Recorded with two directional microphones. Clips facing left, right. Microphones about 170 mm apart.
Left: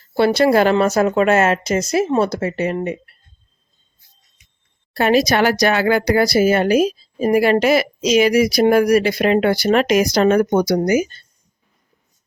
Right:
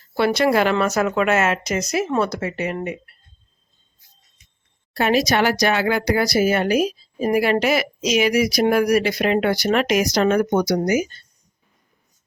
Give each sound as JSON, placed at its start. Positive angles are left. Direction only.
{"t": 0.1, "sound": "speech", "side_deg": 30}
{"t": 4.9, "sound": "speech", "side_deg": 35}